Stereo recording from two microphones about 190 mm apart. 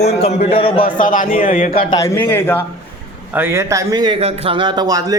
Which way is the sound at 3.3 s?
10° right (ahead or behind).